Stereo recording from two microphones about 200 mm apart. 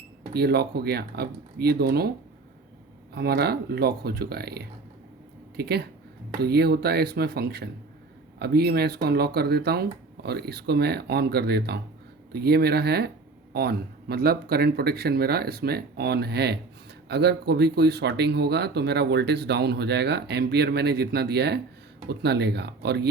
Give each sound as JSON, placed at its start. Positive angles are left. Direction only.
{"t": 0.3, "sound": "speech", "side_deg": -55}
{"t": 3.2, "sound": "speech", "side_deg": -50}